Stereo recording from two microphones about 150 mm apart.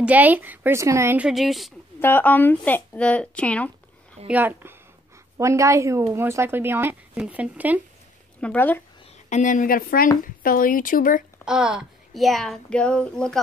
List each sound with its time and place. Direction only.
0.0 s a woman's voice: 10° right (ahead or behind)
2.0 s speech: 15° left (ahead or behind)
4.3 s a woman's voice: 10° right (ahead or behind)
8.4 s speech: 10° left (ahead or behind)
9.3 s a woman's voice: 60° left (ahead or behind)
11.4 s speech: 5° right (ahead or behind)